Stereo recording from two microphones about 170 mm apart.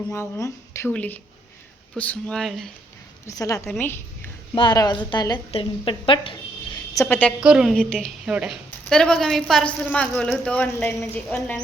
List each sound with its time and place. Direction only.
0.1 s a woman's voice: 15° left (ahead or behind)
3.2 s a woman's voice: 20° left (ahead or behind)
4.5 s a woman's voice: 25° left (ahead or behind)
6.9 s speech: 15° left (ahead or behind)
7.4 s a woman's voice: 5° right (ahead or behind)